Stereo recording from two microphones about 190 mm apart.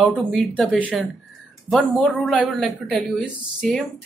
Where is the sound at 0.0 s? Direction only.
Centre (ahead or behind).